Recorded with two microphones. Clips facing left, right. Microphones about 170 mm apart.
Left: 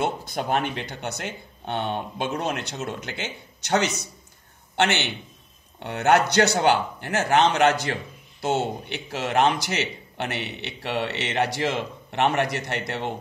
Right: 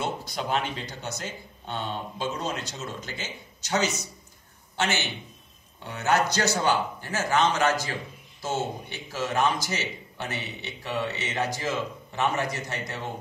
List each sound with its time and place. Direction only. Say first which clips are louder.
0.0 s a man's voice: left 4 dB; 55° left (ahead or behind); by 13.1 s 70° left (ahead or behind)